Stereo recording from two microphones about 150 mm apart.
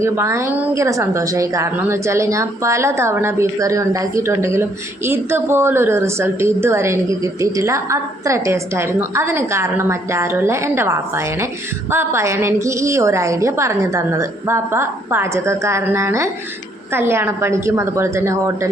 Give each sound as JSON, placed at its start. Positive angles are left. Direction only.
{"t": 0.0, "sound": "a woman's voice", "side_deg": -20}